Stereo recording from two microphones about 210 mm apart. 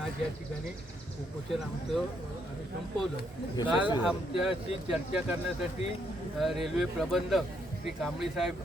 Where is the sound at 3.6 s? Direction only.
5° right (ahead or behind).